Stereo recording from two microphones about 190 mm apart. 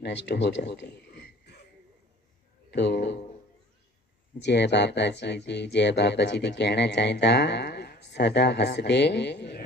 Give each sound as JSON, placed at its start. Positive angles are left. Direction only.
{"t": 0.0, "sound": "a man's voice", "side_deg": 65}
{"t": 2.7, "sound": "speech", "side_deg": 65}
{"t": 4.4, "sound": "speech", "side_deg": 65}